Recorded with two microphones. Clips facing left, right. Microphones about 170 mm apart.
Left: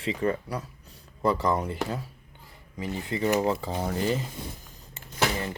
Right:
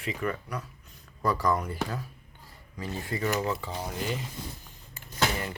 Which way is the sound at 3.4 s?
35° left (ahead or behind).